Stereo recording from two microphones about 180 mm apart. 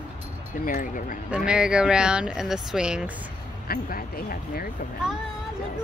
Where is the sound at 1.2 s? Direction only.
5° right (ahead or behind).